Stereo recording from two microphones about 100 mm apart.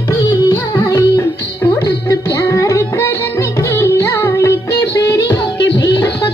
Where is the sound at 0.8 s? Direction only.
30° left (ahead or behind).